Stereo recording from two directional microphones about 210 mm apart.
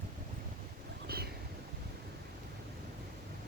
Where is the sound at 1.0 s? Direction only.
45° right (ahead or behind).